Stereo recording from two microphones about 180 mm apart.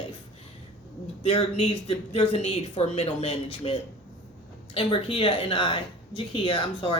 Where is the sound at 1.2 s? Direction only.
35° left (ahead or behind).